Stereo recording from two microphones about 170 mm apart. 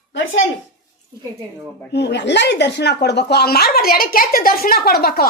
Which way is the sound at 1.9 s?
80° left.